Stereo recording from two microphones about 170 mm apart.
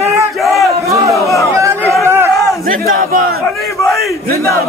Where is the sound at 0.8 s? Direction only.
20° right (ahead or behind).